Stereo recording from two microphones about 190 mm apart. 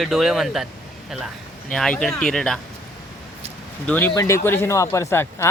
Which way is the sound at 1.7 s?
5° left (ahead or behind).